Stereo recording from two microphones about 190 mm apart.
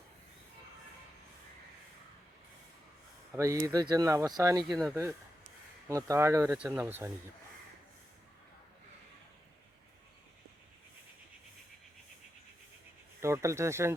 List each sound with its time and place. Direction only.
3.3 s speech: 15° right (ahead or behind)
4.7 s speech: centre (ahead or behind)
5.9 s speech: 15° right (ahead or behind)
13.2 s speech: 15° right (ahead or behind)